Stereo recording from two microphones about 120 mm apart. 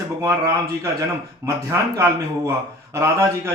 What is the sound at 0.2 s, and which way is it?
Speech, 25° right (ahead or behind).